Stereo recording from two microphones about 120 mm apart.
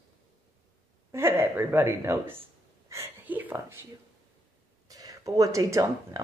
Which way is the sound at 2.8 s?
25° right (ahead or behind).